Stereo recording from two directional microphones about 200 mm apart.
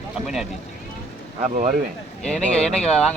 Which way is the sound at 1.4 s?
35° right (ahead or behind).